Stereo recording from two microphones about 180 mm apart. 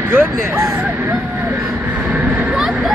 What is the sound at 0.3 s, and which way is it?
Speech, 20° right (ahead or behind).